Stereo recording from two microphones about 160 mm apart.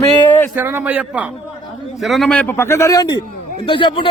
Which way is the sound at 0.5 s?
15° right (ahead or behind).